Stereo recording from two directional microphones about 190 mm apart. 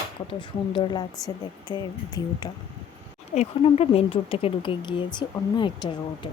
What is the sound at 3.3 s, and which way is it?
Speech, 35° left (ahead or behind).